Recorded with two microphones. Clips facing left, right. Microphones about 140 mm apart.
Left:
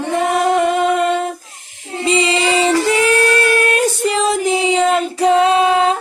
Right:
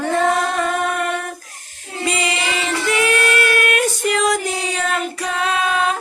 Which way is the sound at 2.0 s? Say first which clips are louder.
Left 7 dB; 25° left (ahead or behind).